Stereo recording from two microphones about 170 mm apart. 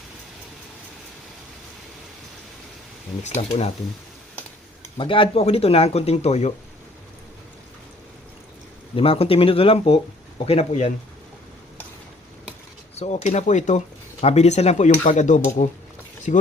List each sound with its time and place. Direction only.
3.2 s speech: 35° left (ahead or behind)
4.9 s speech: 30° left (ahead or behind)
9.0 s speech: 35° left (ahead or behind)
13.0 s speech: 40° left (ahead or behind)